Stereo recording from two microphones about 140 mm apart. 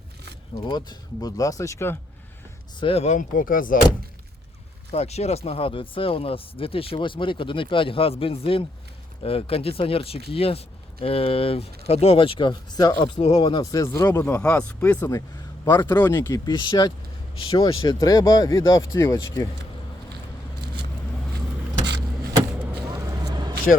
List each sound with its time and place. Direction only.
0.7 s speech: 30° left (ahead or behind)
2.8 s speech: 50° left (ahead or behind); by 3.8 s 80° left
4.9 s speech: 50° left (ahead or behind)
13.6 s speech: 25° left (ahead or behind)
15.6 s speech: 30° left (ahead or behind)
18.0 s speech: 25° left (ahead or behind)
22.7 s vehicle: 30° right (ahead or behind)